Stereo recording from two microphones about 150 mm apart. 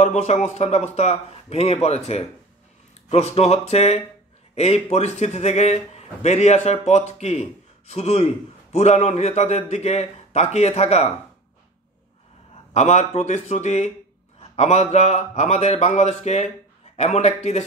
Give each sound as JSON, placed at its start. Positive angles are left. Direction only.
{"t": 0.0, "sound": "speech", "side_deg": 50}
{"t": 12.7, "sound": "speech", "side_deg": 50}